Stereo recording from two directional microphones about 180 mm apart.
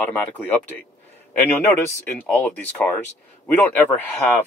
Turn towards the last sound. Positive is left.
turn(degrees=10)  # may be behind; listen again after turning